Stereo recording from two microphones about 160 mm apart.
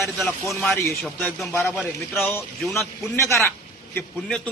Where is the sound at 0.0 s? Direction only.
Centre (ahead or behind).